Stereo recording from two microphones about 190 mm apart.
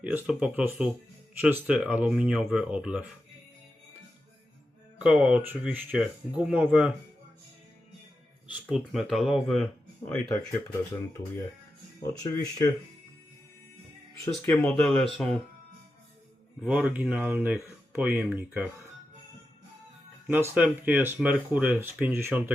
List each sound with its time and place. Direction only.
0.0 s speech: 5° right (ahead or behind)
4.9 s speech: 5° right (ahead or behind)
8.6 s speech: centre (ahead or behind)
12.0 s speech: 20° left (ahead or behind)
14.4 s speech: 10° left (ahead or behind)
16.6 s speech: 5° right (ahead or behind)
20.2 s speech: 10° right (ahead or behind)